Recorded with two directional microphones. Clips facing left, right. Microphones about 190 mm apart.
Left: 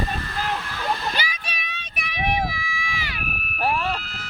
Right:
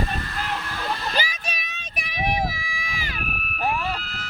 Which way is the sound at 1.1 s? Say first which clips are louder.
Right 2 dB; 40° right (ahead or behind).